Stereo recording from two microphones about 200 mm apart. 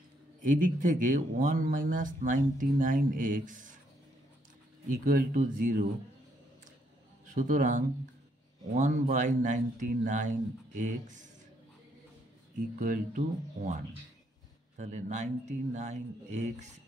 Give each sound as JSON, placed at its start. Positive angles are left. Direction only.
{"t": 0.4, "sound": "speech", "side_deg": -40}
{"t": 4.8, "sound": "speech", "side_deg": -45}
{"t": 7.3, "sound": "speech", "side_deg": -40}
{"t": 12.7, "sound": "speech", "side_deg": -40}
{"t": 14.8, "sound": "speech", "side_deg": -35}